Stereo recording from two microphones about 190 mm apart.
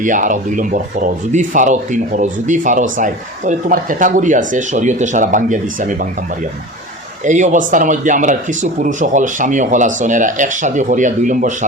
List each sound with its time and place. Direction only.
0.0 s speech: 45° right (ahead or behind)
7.3 s speech: 40° right (ahead or behind)